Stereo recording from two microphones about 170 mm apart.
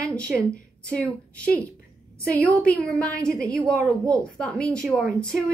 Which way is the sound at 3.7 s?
20° right (ahead or behind).